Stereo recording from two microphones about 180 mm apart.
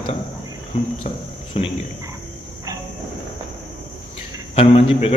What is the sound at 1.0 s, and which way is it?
Cricket, 30° left (ahead or behind).